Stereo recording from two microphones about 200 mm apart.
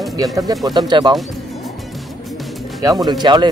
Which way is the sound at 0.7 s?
20° right (ahead or behind).